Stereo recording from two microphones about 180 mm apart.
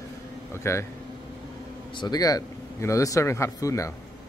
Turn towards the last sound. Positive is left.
turn(degrees=15)  # may be behind; listen again after turning